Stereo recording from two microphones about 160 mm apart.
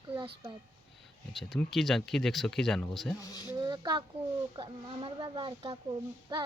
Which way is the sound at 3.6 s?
25° right (ahead or behind).